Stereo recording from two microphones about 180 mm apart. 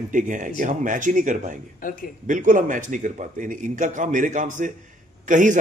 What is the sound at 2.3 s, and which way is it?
A man's voice, 45° right (ahead or behind).